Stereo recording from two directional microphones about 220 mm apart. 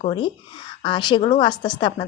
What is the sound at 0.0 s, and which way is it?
A woman's voice, 25° left (ahead or behind).